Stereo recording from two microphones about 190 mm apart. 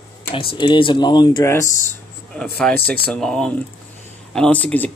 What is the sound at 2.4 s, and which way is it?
Speech, 5° left (ahead or behind).